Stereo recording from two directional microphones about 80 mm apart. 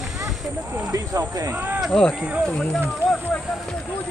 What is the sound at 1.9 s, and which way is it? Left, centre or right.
Speech, centre.